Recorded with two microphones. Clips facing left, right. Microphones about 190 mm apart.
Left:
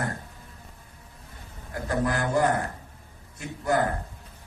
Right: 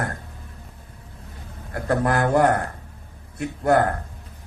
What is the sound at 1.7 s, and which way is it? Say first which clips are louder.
A man's voice: right 5 dB; 65° right (ahead or behind).